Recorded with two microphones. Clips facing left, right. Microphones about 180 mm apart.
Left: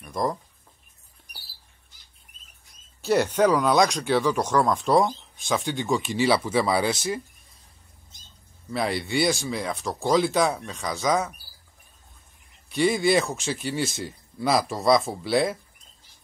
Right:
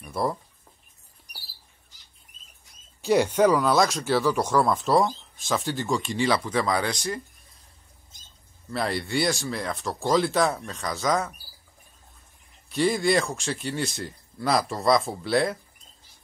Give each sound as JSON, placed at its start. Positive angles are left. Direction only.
{"t": 0.0, "sound": "a sound", "side_deg": -5}
{"t": 2.3, "sound": "rodents", "side_deg": 60}
{"t": 3.0, "sound": "speech", "side_deg": -10}
{"t": 8.6, "sound": "speech", "side_deg": 0}
{"t": 12.6, "sound": "speech", "side_deg": 0}